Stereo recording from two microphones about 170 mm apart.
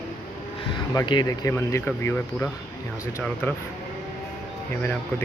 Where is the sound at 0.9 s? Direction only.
25° left (ahead or behind).